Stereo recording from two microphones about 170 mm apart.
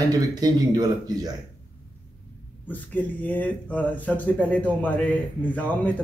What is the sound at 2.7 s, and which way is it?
Speech, 10° left (ahead or behind).